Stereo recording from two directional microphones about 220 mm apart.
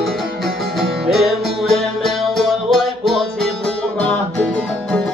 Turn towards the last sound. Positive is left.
turn(degrees=5)  # may be behind; listen again after turning